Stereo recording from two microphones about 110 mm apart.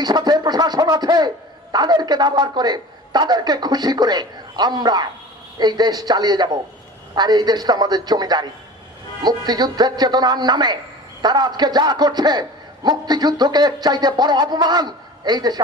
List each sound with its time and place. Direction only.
0.0 s a man's voice: 40° right (ahead or behind)